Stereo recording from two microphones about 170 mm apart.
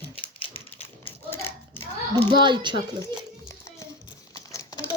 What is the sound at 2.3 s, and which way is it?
Speech, 25° right (ahead or behind).